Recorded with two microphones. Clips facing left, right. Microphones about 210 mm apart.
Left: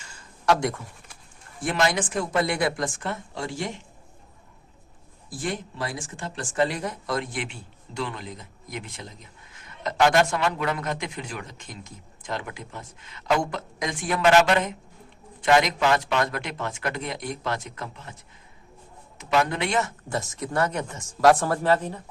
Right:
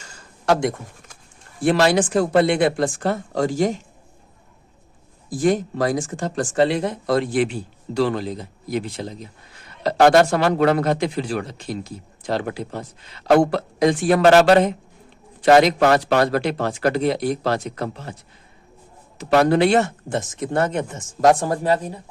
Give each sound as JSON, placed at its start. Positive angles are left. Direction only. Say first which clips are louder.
{"t": 0.4, "sound": "a man's voice", "louder": "right 4 dB", "side_deg": -30}
{"t": 5.4, "sound": "a man's voice", "louder": "right 12 dB", "side_deg": -40}
{"t": 6.7, "sound": "a man's voice", "louder": "right 9 dB", "side_deg": -30}
{"t": 19.4, "sound": "a man's voice", "louder": "right 9 dB", "side_deg": -35}